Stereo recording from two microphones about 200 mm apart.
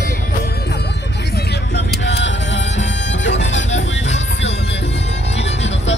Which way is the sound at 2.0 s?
65° left (ahead or behind).